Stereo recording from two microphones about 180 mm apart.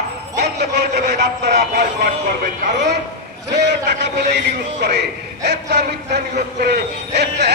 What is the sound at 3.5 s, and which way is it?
A man's voice, 70° right (ahead or behind).